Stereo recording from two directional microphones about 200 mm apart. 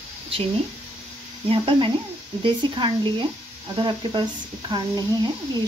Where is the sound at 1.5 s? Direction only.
25° right (ahead or behind).